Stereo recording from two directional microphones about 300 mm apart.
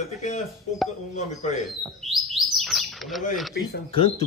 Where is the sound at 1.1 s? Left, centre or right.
Left.